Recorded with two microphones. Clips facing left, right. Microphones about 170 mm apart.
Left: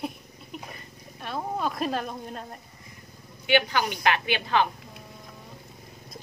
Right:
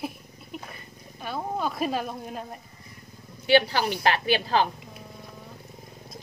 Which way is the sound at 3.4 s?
35° right (ahead or behind).